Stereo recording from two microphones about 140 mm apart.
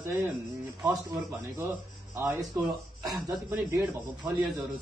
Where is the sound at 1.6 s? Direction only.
20° right (ahead or behind).